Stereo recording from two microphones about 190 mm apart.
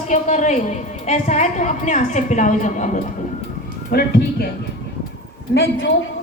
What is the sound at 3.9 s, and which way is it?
Speech, 55° left (ahead or behind).